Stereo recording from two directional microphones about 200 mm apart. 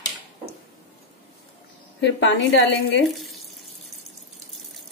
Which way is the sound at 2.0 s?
60° left (ahead or behind).